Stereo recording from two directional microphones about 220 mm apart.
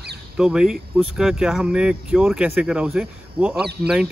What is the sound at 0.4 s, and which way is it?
Speech, centre (ahead or behind).